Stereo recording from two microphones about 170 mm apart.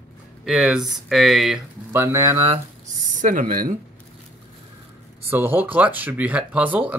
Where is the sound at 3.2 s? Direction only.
50° right (ahead or behind).